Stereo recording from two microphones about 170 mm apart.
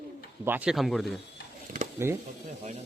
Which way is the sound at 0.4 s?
10° right (ahead or behind).